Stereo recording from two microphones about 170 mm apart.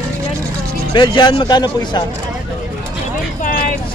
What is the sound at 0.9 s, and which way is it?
Speech, 25° left (ahead or behind).